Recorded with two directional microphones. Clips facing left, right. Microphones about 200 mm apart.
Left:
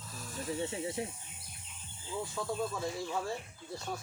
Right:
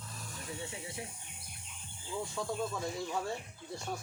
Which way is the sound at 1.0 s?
30° left (ahead or behind).